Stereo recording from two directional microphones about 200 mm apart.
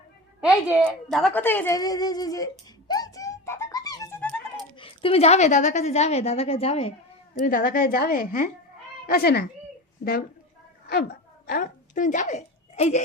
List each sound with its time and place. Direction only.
0.4 s a woman's voice: 5° right (ahead or behind)
1.1 s whimper: 5° left (ahead or behind)
4.8 s a woman's voice: 25° left (ahead or behind)
7.4 s a woman's voice: 45° left (ahead or behind)
11.4 s a woman's voice: 45° left (ahead or behind)